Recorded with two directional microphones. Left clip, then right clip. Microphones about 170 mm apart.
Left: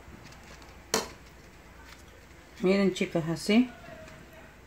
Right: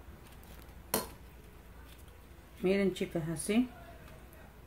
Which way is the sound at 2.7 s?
35° left (ahead or behind).